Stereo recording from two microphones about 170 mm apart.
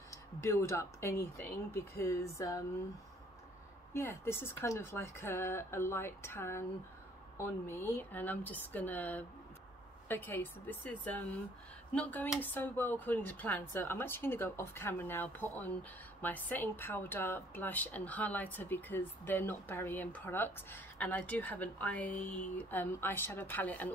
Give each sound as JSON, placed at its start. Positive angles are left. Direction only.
{"t": 0.1, "sound": "speech", "side_deg": 15}
{"t": 3.9, "sound": "speech", "side_deg": 15}